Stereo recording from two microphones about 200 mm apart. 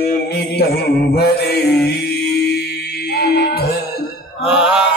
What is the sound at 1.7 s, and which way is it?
Music, 55° left (ahead or behind).